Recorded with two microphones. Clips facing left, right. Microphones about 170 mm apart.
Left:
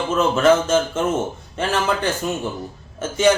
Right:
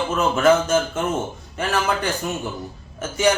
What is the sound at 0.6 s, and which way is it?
Speech, 25° left (ahead or behind).